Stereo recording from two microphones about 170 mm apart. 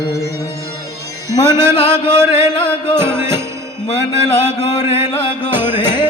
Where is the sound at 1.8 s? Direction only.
15° right (ahead or behind).